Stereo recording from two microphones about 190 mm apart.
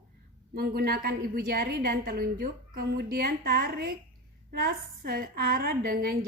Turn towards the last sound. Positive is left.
turn(degrees=-50)  # may be behind; listen again after turning